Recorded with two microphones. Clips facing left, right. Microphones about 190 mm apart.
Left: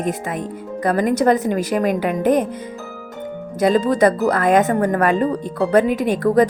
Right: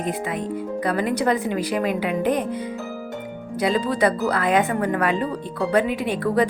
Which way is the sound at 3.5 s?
45° left (ahead or behind).